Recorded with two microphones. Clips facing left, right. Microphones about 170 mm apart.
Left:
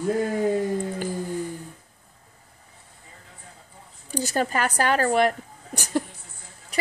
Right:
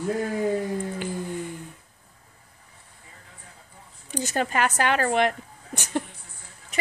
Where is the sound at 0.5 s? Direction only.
40° left (ahead or behind).